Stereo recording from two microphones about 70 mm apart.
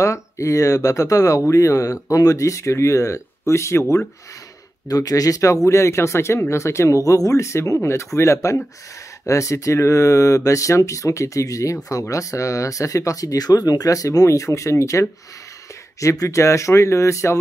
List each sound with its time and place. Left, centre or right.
0.0 s speech: left
4.8 s speech: left